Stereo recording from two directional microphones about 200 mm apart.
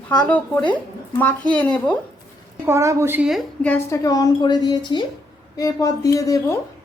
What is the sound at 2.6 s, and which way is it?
A woman's voice, 15° right (ahead or behind).